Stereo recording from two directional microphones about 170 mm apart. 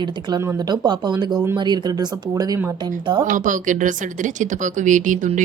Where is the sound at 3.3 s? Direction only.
50° right (ahead or behind).